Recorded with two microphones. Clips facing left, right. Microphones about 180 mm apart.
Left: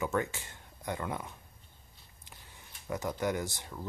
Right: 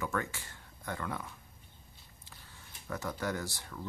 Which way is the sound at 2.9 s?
20° left (ahead or behind).